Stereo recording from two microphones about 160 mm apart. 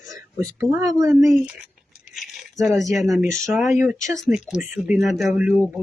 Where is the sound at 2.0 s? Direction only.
Centre (ahead or behind).